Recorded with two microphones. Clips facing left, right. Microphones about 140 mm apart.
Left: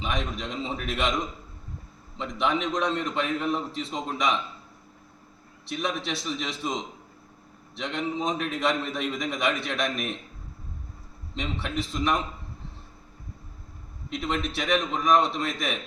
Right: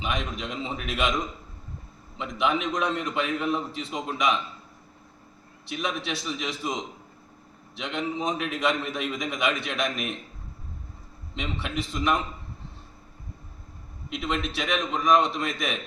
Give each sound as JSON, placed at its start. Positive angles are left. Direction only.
{"t": 0.0, "sound": "a man's voice", "side_deg": 0}
{"t": 2.1, "sound": "a man's voice", "side_deg": 0}
{"t": 5.8, "sound": "a man's voice", "side_deg": 0}
{"t": 11.3, "sound": "a man's voice", "side_deg": 0}
{"t": 14.2, "sound": "a man's voice", "side_deg": 0}